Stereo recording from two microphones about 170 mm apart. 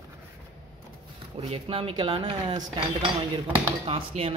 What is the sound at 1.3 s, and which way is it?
Speech, 35° right (ahead or behind).